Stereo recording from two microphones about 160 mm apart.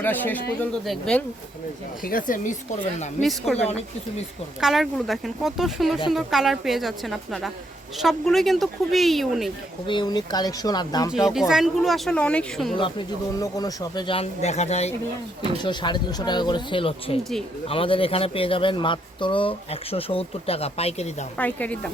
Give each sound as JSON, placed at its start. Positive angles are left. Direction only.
{"t": 0.0, "sound": "speech", "side_deg": 10}
{"t": 2.0, "sound": "speech", "side_deg": 60}
{"t": 3.2, "sound": "speech", "side_deg": 0}
{"t": 4.6, "sound": "speech", "side_deg": 0}
{"t": 9.8, "sound": "speech", "side_deg": 30}
{"t": 11.3, "sound": "speech", "side_deg": -5}
{"t": 13.4, "sound": "a man's voice", "side_deg": 25}
{"t": 15.6, "sound": "a man's voice", "side_deg": 30}
{"t": 21.3, "sound": "speech", "side_deg": 10}